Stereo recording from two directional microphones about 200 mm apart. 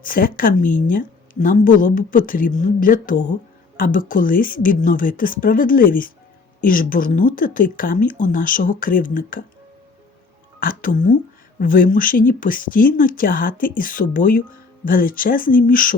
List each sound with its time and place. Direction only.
0.0 s a woman's voice: 45° left (ahead or behind)
10.6 s a woman's voice: 45° left (ahead or behind)